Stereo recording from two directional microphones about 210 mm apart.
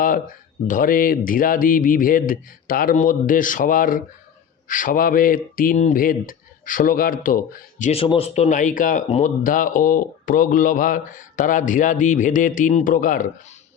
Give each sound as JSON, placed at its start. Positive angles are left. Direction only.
{"t": 0.7, "sound": "speech", "side_deg": 40}